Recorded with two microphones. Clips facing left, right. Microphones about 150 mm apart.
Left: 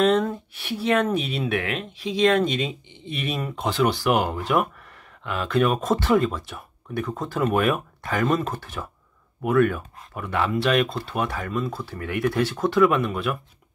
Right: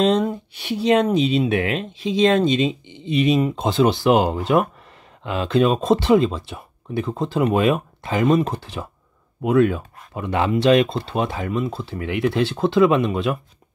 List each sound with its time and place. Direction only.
0.0 s speech: 20° right (ahead or behind)
1.6 s speech: 30° right (ahead or behind)